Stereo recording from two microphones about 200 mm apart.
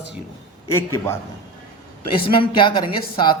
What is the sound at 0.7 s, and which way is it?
Speech, 15° left (ahead or behind).